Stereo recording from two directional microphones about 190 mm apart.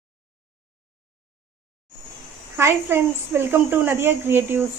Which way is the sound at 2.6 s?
15° right (ahead or behind).